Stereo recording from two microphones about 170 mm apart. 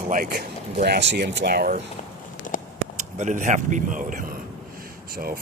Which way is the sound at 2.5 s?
50° left (ahead or behind).